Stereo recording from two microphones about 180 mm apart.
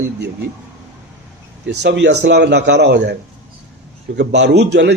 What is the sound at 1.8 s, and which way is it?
A man's voice, 75° right (ahead or behind).